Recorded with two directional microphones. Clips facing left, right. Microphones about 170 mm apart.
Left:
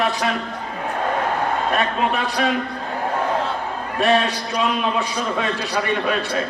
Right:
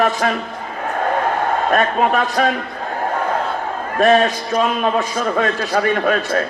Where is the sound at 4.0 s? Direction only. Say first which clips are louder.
Right 5 dB; 45° right (ahead or behind).